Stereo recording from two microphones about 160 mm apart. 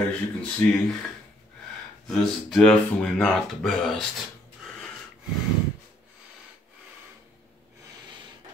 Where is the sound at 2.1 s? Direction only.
5° left (ahead or behind).